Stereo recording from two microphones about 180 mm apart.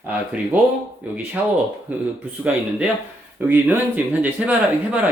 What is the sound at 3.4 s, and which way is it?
Speech, 10° right (ahead or behind).